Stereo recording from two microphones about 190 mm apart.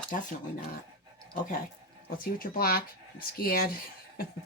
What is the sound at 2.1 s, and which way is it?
Speech, 50° left (ahead or behind).